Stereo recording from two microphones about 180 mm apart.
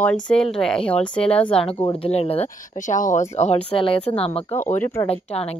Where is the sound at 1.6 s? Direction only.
30° left (ahead or behind).